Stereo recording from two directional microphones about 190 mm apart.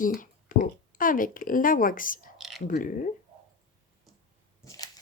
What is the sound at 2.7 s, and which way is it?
Speech, 45° left (ahead or behind).